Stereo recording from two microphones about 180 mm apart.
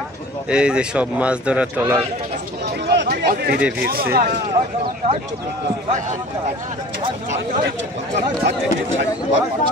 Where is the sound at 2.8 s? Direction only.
65° right (ahead or behind).